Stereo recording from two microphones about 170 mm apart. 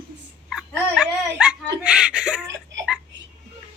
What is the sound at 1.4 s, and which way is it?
Chuckle, 5° right (ahead or behind).